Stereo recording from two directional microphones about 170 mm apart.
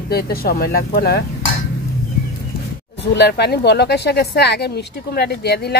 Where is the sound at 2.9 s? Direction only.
75° left (ahead or behind).